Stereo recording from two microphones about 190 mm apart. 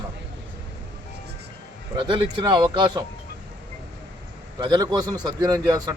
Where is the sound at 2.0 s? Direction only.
25° right (ahead or behind).